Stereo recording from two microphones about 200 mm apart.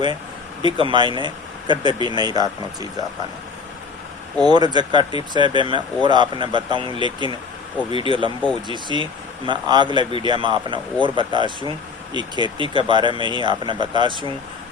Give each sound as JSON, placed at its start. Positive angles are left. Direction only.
{"t": 0.6, "sound": "speech", "side_deg": -25}
{"t": 4.4, "sound": "speech", "side_deg": -20}